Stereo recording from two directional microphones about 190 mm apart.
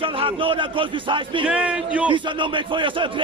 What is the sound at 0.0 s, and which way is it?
A man's voice, 30° right (ahead or behind).